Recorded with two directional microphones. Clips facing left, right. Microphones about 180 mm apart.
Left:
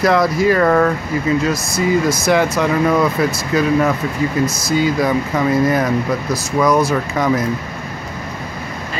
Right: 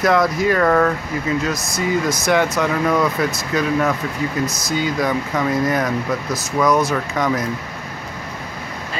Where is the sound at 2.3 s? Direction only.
5° left (ahead or behind).